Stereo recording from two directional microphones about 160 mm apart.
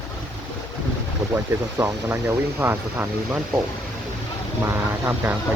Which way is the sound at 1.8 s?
15° right (ahead or behind).